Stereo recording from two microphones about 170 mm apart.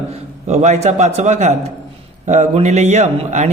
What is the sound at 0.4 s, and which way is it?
Speech, 40° right (ahead or behind).